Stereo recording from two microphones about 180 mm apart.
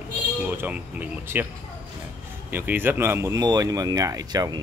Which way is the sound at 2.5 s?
10° right (ahead or behind).